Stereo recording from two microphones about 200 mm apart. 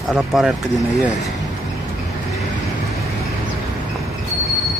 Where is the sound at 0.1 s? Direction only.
Centre (ahead or behind).